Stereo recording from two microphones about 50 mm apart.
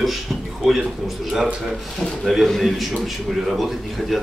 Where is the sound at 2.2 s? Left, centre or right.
Centre.